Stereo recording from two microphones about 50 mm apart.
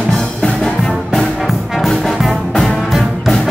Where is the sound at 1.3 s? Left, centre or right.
Centre.